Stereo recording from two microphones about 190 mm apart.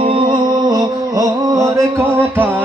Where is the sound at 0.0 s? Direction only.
25° right (ahead or behind).